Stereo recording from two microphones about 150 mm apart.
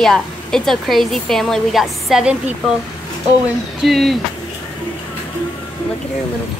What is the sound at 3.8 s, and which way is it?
Speech, centre (ahead or behind).